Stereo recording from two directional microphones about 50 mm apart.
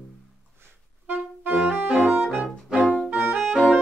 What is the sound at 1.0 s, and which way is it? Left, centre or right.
Clarinet, right.